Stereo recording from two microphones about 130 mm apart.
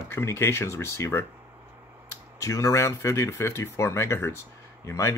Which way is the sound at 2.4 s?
25° left (ahead or behind).